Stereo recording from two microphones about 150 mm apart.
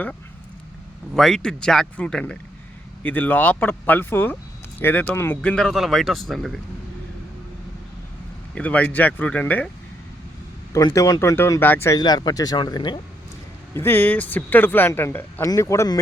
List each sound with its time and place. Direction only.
1.1 s speech: 5° left (ahead or behind)
8.5 s speech: 10° left (ahead or behind)
10.7 s speech: 20° left (ahead or behind)
13.7 s speech: 15° left (ahead or behind)